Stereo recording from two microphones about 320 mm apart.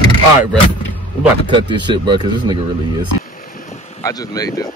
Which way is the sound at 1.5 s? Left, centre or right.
Centre.